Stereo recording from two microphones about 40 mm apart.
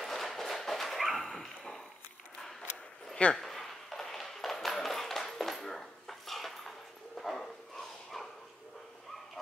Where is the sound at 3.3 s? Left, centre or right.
Centre.